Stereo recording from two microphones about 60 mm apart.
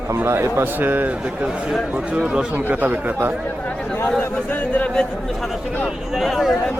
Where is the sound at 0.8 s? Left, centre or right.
Right.